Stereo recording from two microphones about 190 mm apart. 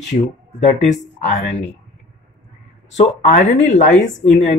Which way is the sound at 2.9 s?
40° left (ahead or behind).